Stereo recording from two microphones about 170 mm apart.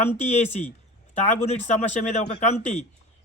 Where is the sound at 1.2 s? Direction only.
40° left (ahead or behind).